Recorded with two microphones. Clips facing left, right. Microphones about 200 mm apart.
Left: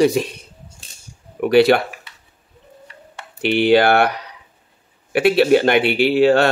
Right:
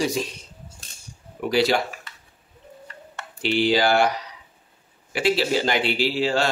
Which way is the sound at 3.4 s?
60° left (ahead or behind).